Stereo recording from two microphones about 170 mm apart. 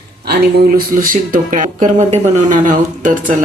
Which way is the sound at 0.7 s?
55° right (ahead or behind).